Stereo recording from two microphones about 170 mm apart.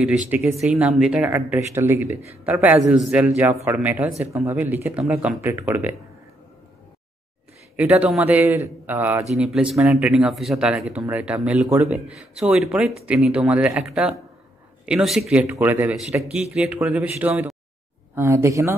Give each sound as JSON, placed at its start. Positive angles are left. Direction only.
{"t": 0.6, "sound": "a man's voice", "side_deg": -5}
{"t": 7.7, "sound": "a man's voice", "side_deg": -5}
{"t": 15.4, "sound": "a man's voice", "side_deg": -15}